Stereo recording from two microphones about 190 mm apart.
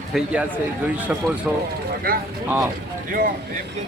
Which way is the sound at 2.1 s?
50° right (ahead or behind).